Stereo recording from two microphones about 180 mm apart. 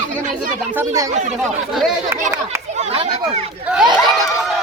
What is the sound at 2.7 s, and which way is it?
Speech, 35° right (ahead or behind).